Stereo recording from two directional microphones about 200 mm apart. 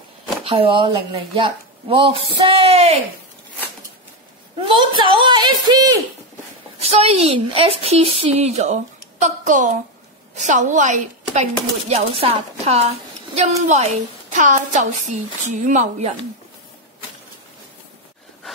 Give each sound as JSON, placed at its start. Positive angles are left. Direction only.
{"t": 0.4, "sound": "speech", "side_deg": -30}
{"t": 4.6, "sound": "speech", "side_deg": -25}
{"t": 6.8, "sound": "a woman's voice", "side_deg": -30}